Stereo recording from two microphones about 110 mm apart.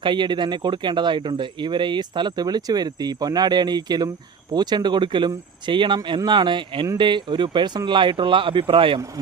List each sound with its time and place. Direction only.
0.0 s speech: 45° right (ahead or behind)